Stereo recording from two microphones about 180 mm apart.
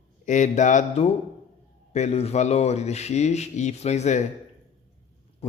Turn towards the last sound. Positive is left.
turn(degrees=40)  # may be behind; listen again after turning